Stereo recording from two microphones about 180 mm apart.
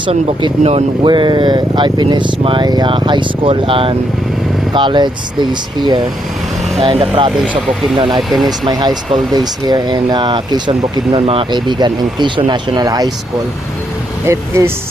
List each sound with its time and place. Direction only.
0.0 s speech: 30° right (ahead or behind)
14.3 s speech: 15° right (ahead or behind)